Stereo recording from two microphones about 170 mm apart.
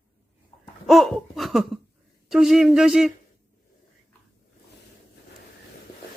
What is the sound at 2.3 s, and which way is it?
Speech, centre (ahead or behind).